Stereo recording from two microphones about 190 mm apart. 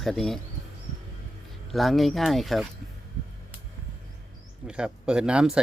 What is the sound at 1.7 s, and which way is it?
Speech, centre (ahead or behind).